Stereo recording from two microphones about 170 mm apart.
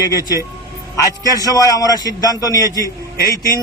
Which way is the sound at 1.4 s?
20° left (ahead or behind).